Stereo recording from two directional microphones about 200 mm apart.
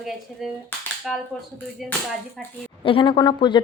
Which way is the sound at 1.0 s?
5° left (ahead or behind).